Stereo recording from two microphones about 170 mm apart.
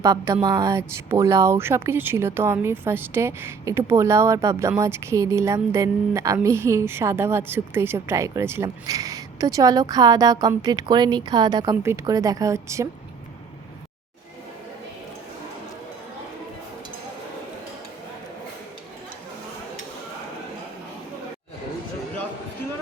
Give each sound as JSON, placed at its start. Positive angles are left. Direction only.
{"t": 0.0, "sound": "speech", "side_deg": -20}